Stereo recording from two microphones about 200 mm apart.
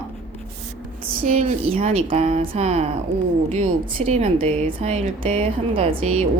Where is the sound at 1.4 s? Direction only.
30° right (ahead or behind).